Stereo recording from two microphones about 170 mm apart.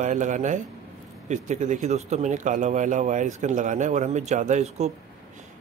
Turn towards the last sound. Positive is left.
turn(degrees=-45)  # may be behind; listen again after turning